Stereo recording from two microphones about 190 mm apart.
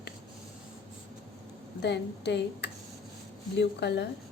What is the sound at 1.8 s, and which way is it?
A woman's voice, 65° left (ahead or behind).